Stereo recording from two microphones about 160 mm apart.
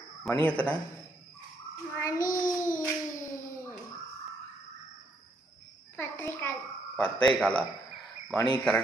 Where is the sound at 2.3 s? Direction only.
20° left (ahead or behind).